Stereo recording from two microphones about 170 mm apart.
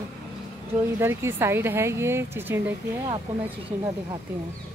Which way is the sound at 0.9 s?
15° right (ahead or behind).